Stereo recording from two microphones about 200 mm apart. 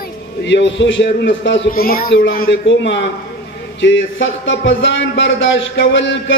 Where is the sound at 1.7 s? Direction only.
50° left (ahead or behind).